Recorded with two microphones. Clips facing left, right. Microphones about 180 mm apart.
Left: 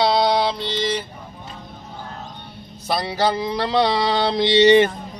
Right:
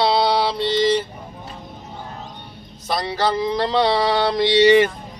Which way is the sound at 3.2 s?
15° left (ahead or behind).